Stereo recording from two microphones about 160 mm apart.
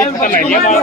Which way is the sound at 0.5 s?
60° left (ahead or behind).